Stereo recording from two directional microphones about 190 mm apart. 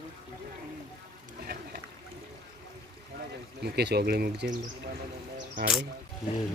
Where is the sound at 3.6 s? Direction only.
60° right (ahead or behind).